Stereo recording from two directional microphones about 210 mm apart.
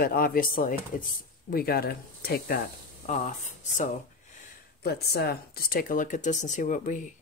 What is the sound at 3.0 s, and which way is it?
Speech, 35° left (ahead or behind).